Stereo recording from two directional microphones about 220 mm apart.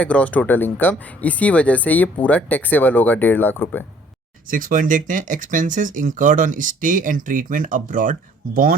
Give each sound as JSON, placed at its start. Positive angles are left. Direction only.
{"t": 0.0, "sound": "speech", "side_deg": 5}
{"t": 4.4, "sound": "speech", "side_deg": -40}